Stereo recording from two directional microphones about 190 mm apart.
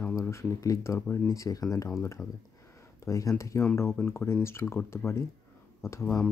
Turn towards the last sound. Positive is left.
turn(degrees=15)  # may be behind; listen again after turning